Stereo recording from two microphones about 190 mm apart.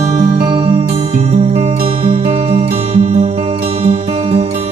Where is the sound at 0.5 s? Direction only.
30° right (ahead or behind).